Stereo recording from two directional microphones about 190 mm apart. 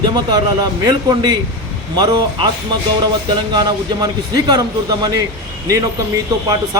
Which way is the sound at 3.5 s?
20° right (ahead or behind).